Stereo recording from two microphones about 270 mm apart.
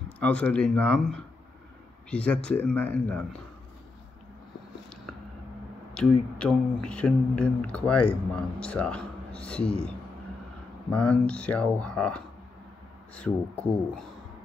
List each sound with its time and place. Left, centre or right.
0.2 s speech: centre
5.9 s speech: centre
10.9 s speech: centre